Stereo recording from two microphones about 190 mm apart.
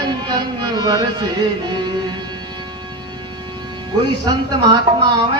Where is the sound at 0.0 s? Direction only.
25° right (ahead or behind).